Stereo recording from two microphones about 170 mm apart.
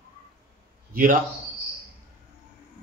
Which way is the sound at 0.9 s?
55° right (ahead or behind).